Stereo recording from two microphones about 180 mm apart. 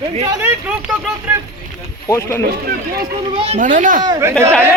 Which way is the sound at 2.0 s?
15° left (ahead or behind).